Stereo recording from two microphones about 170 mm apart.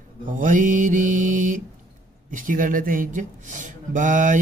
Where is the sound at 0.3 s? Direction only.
50° right (ahead or behind).